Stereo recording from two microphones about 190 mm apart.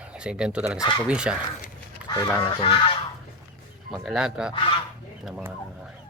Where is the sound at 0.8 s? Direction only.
25° left (ahead or behind).